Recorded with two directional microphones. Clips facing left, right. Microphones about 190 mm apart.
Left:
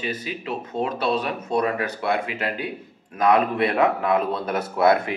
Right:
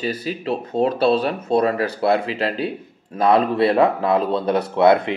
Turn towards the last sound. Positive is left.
turn(degrees=-25)  # may be behind; listen again after turning